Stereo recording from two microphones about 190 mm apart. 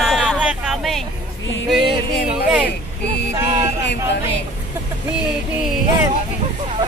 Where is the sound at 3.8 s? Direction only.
65° left (ahead or behind).